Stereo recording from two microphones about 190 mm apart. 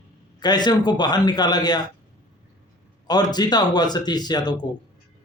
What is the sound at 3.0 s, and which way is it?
Speech, 20° left (ahead or behind).